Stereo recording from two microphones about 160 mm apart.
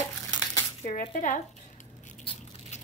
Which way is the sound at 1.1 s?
55° left (ahead or behind).